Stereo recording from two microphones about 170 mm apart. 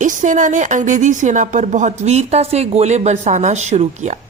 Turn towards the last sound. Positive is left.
turn(degrees=-45)  # may be behind; listen again after turning